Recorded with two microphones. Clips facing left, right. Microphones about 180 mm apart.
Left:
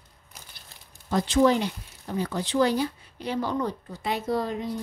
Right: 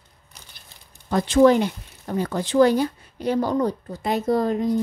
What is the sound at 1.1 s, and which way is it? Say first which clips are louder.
Speech: right 5 dB; 55° right (ahead or behind).